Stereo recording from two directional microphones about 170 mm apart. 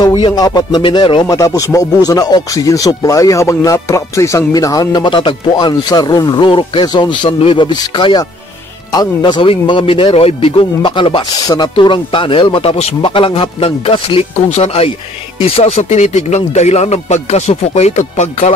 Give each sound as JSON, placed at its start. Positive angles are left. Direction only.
{"t": 0.0, "sound": "speech", "side_deg": 25}
{"t": 1.2, "sound": "speech", "side_deg": 20}